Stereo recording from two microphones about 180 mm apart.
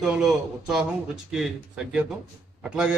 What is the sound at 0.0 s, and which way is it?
A man's voice, 5° right (ahead or behind).